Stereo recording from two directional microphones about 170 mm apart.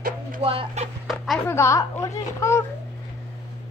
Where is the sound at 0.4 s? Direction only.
35° right (ahead or behind).